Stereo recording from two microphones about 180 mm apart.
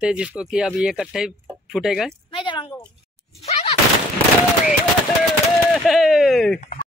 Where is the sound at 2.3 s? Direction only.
25° left (ahead or behind).